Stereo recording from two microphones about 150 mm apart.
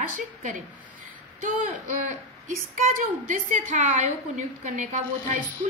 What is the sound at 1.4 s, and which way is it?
A woman's voice, 65° right (ahead or behind).